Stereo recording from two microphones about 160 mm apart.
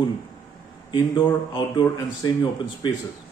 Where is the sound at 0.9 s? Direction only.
30° left (ahead or behind).